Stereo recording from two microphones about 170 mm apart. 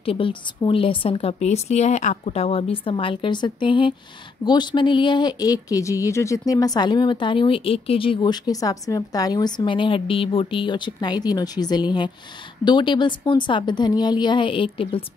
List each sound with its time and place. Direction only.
0.0 s a woman's voice: 30° left (ahead or behind)